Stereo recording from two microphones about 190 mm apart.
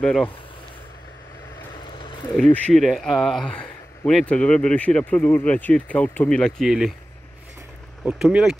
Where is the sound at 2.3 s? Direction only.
5° left (ahead or behind).